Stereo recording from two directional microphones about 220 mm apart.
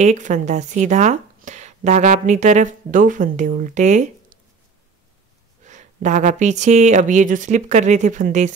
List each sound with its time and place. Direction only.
0.0 s speech: 30° right (ahead or behind)
5.7 s speech: 35° right (ahead or behind)